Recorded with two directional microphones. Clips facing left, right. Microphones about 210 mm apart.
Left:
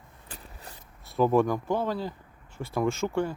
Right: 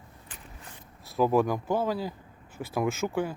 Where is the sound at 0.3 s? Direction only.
35° left (ahead or behind).